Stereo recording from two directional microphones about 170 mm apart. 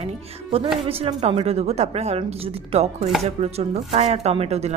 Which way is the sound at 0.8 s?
35° right (ahead or behind).